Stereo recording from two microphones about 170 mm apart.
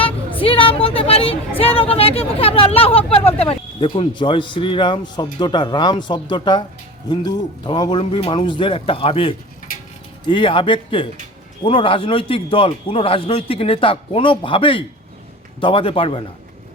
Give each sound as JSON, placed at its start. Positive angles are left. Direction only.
{"t": 0.3, "sound": "a woman's voice", "side_deg": 30}